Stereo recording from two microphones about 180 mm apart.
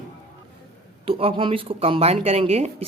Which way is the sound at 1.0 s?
30° right (ahead or behind).